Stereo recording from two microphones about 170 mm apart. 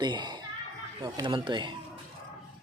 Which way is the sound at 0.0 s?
25° right (ahead or behind).